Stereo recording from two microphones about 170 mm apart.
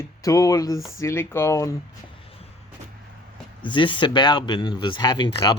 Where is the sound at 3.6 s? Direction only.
30° left (ahead or behind).